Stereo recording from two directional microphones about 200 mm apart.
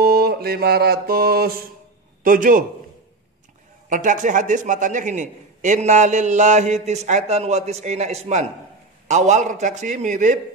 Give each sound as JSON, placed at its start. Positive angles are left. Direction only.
{"t": 0.0, "sound": "mantra", "side_deg": -50}
{"t": 2.2, "sound": "a man's voice", "side_deg": -40}
{"t": 3.9, "sound": "a man's voice", "side_deg": -40}